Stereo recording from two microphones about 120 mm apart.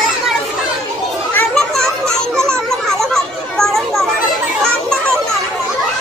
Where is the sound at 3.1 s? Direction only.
5° left (ahead or behind).